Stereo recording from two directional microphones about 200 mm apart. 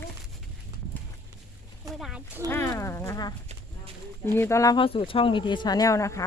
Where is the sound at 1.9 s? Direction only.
Centre (ahead or behind).